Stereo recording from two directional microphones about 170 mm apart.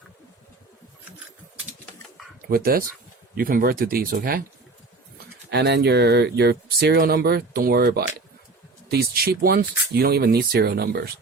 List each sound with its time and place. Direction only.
2.5 s speech: 60° right (ahead or behind)
5.5 s speech: 80° right